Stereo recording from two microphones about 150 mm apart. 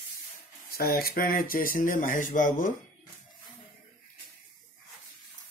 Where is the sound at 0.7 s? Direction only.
90° left; by 2.7 s 60° left (ahead or behind).